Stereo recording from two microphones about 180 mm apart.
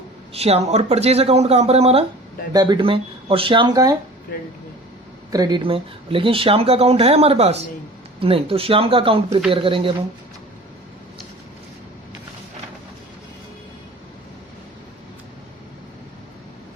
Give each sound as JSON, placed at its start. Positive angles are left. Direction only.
{"t": 0.3, "sound": "speech", "side_deg": -35}
{"t": 2.5, "sound": "speech", "side_deg": -20}
{"t": 5.3, "sound": "speech", "side_deg": -20}